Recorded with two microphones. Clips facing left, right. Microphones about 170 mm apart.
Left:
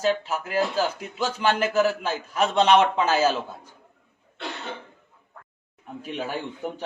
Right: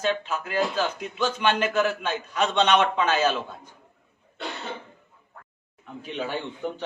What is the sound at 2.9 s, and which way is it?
Speech, 5° left (ahead or behind).